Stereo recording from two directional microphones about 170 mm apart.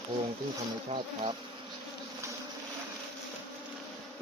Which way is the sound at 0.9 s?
30° right (ahead or behind).